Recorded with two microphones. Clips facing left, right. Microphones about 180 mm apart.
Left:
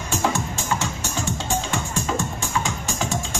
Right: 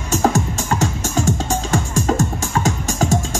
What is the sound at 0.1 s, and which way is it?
Music, 45° right (ahead or behind).